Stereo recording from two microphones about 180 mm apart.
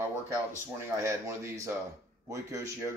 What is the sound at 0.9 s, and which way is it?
A man's voice, 15° right (ahead or behind).